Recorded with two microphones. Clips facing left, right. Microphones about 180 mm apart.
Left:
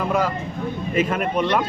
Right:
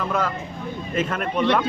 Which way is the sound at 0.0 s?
10° left (ahead or behind).